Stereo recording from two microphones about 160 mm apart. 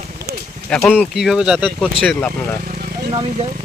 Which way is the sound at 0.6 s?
5° left (ahead or behind).